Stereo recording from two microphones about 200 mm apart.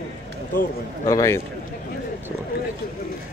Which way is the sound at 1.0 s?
15° left (ahead or behind).